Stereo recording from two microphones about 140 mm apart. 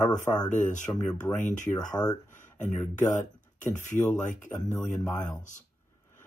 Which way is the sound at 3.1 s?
60° left (ahead or behind).